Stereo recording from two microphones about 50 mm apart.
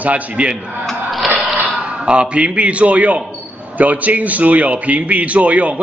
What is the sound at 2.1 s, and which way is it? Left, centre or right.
A man's voice, right.